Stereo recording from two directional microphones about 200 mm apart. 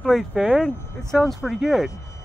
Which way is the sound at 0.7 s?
10° left (ahead or behind).